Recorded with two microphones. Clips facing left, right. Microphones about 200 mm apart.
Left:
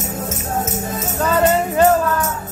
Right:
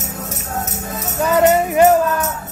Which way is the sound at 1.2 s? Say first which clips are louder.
Right 3 dB; 15° right (ahead or behind).